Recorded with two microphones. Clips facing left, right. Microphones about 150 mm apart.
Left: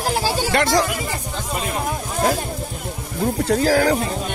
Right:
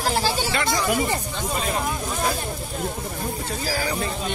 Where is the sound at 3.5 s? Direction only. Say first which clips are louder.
Left 12 dB; 75° left (ahead or behind).